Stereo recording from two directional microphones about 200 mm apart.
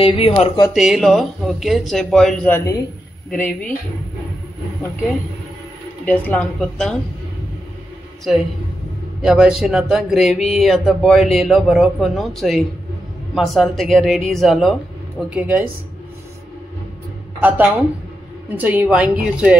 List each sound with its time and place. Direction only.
0.0 s speech: 25° left (ahead or behind)
0.7 s a woman's voice: centre (ahead or behind)
6.0 s a woman's voice: 10° left (ahead or behind)
9.2 s speech: 5° right (ahead or behind)
17.4 s a woman's voice: 10° right (ahead or behind)